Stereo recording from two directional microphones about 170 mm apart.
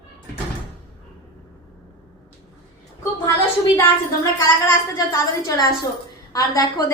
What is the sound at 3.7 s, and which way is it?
A woman's voice, 15° left (ahead or behind).